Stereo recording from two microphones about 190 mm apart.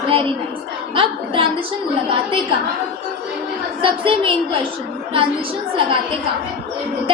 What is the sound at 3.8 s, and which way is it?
Speech, 25° right (ahead or behind).